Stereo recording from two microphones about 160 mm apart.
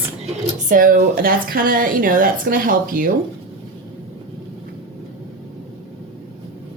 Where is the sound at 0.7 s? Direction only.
60° right (ahead or behind).